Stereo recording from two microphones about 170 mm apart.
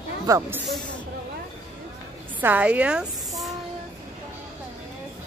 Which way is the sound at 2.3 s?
10° right (ahead or behind).